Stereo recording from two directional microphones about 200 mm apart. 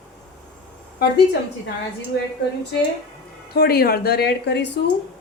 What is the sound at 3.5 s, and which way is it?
A woman's voice, 50° left (ahead or behind).